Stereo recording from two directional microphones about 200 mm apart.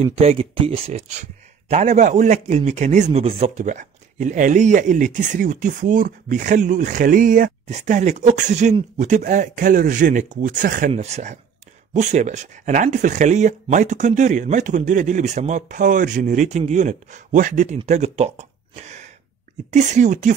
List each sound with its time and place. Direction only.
0.0 s speech: 30° right (ahead or behind)